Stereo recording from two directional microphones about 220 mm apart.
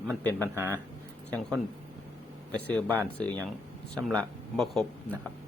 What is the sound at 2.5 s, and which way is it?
Speech, 5° left (ahead or behind).